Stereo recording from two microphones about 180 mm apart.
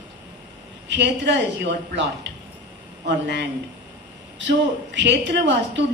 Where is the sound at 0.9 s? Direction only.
80° right.